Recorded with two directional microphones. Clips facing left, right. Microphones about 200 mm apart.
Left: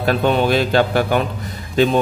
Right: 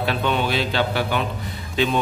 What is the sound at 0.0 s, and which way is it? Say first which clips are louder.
A man's voice: left 6 dB; 45° left (ahead or behind).